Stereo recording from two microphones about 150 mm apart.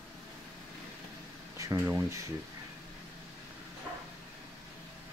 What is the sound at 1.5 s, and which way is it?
Speech, 20° right (ahead or behind).